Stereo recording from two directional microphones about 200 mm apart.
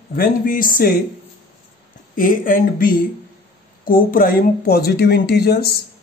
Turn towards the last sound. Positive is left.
turn(degrees=50)  # may be behind; listen again after turning